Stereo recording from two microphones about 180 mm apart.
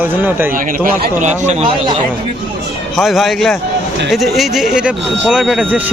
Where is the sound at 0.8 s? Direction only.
50° right (ahead or behind).